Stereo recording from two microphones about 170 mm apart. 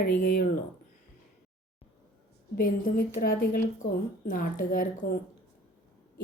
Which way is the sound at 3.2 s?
60° left (ahead or behind).